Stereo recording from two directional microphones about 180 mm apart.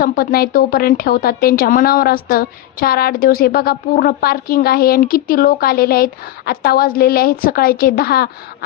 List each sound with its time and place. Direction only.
0.0 s speech: 55° left (ahead or behind)